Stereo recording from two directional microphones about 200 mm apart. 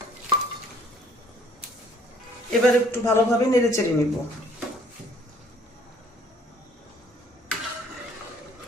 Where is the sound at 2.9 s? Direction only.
15° left (ahead or behind).